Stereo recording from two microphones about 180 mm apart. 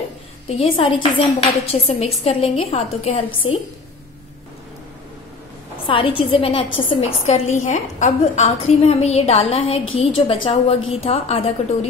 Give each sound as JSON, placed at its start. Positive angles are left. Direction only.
{"t": 0.6, "sound": "a woman's voice", "side_deg": 30}
{"t": 5.9, "sound": "a woman's voice", "side_deg": 30}